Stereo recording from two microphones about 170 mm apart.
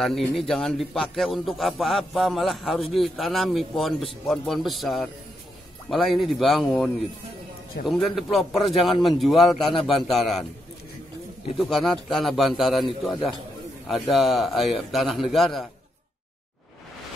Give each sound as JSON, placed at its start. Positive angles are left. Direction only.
{"t": 0.0, "sound": "a man's voice", "side_deg": 0}
{"t": 11.5, "sound": "a man's voice", "side_deg": 0}